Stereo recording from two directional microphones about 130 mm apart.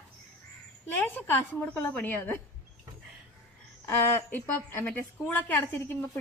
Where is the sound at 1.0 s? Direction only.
15° left (ahead or behind).